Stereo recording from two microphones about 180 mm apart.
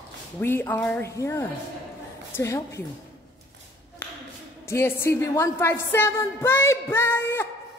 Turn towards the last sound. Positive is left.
turn(degrees=15)  # may be behind; listen again after turning